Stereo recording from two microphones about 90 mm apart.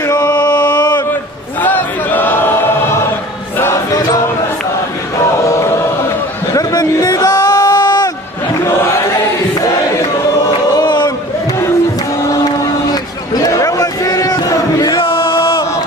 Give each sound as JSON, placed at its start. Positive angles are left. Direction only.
{"t": 0.0, "sound": "chant", "side_deg": 45}
{"t": 1.6, "sound": "choir", "side_deg": 20}
{"t": 6.5, "sound": "a sound", "side_deg": 45}
{"t": 8.6, "sound": "chant", "side_deg": 30}
{"t": 10.4, "sound": "choir", "side_deg": 45}
{"t": 12.3, "sound": "a sound", "side_deg": 45}
{"t": 15.0, "sound": "chant", "side_deg": 75}